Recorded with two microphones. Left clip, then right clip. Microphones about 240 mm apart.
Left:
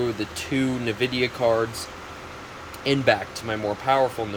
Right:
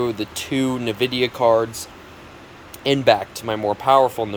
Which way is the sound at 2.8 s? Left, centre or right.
Centre.